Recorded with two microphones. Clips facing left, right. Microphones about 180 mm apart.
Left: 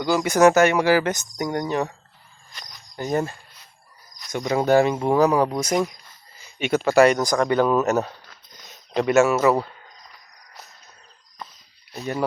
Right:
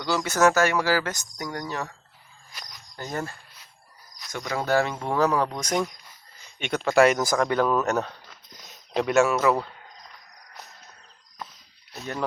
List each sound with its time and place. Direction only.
0.0 s speech: 15° left (ahead or behind)
2.5 s cricket: 5° right (ahead or behind)
2.9 s speech: 15° left (ahead or behind)
8.3 s a sound: centre (ahead or behind)